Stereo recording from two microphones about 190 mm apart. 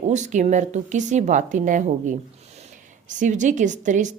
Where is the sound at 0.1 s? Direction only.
40° right (ahead or behind).